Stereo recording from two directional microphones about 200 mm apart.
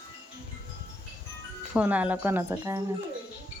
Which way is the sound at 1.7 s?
5° right (ahead or behind).